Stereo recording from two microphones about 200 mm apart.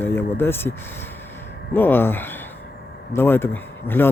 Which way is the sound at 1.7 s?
10° left (ahead or behind).